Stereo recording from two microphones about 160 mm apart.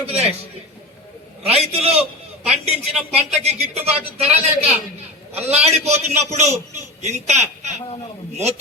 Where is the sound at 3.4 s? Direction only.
40° right (ahead or behind).